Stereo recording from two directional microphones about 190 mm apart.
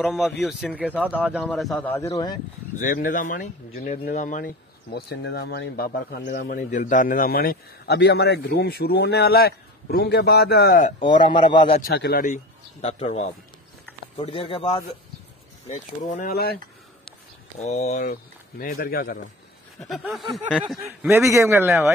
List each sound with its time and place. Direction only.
0.0 s speech: centre (ahead or behind)
1.9 s speech: 15° left (ahead or behind)
2.8 s speech: 45° left (ahead or behind)
6.2 s a man's voice: 45° left (ahead or behind)
11.0 s a man's voice: 25° left (ahead or behind)
11.8 s speech: 55° left (ahead or behind)
12.8 s a man's voice: 35° left (ahead or behind); by 16.5 s 55° left (ahead or behind)
17.6 s speech: 35° left (ahead or behind)
18.6 s speech: 50° left (ahead or behind)
19.8 s speech: centre (ahead or behind)
21.0 s a man's voice: 15° right (ahead or behind)